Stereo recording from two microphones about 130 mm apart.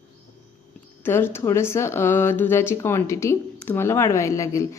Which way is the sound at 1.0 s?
20° left (ahead or behind).